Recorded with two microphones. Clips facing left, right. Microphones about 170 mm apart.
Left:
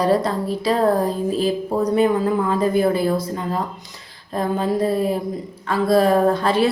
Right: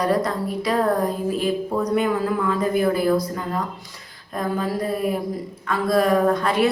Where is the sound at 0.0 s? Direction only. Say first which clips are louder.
Left 3 dB; 30° left (ahead or behind).